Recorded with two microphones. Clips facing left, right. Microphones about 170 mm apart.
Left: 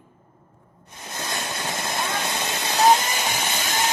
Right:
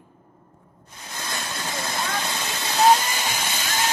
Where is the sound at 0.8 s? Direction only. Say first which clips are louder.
Left 2 dB; 20° left (ahead or behind).